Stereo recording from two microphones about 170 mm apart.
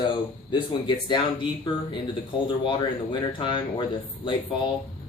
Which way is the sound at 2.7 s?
25° left (ahead or behind).